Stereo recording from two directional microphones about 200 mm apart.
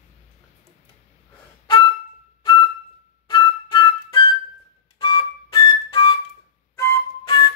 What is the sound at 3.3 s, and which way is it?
Flute, 20° left (ahead or behind).